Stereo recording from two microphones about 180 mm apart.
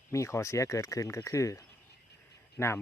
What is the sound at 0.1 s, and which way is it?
Speech, 15° left (ahead or behind).